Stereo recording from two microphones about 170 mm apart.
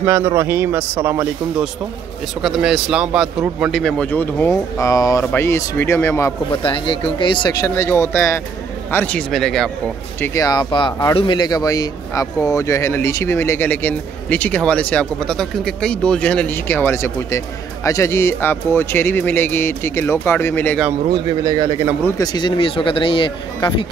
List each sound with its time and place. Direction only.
0.0 s a man's voice: 15° right (ahead or behind); by 6.3 s 15° left (ahead or behind)
6.5 s speech: 30° left (ahead or behind); by 9.7 s centre (ahead or behind)
10.2 s speech: 20° left (ahead or behind)
21.1 s speech: 25° right (ahead or behind)
22.0 s speech: 25° left (ahead or behind)